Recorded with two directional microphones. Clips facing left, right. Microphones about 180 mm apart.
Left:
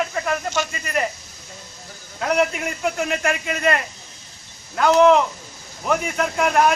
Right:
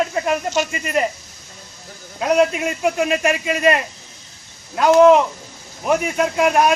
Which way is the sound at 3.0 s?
15° right (ahead or behind).